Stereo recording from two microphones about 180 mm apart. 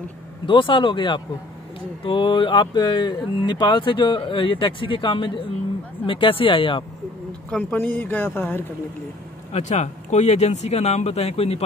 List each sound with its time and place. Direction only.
0.5 s speech: 30° left (ahead or behind)
7.5 s speech: 10° left (ahead or behind)
9.5 s speech: 40° left (ahead or behind)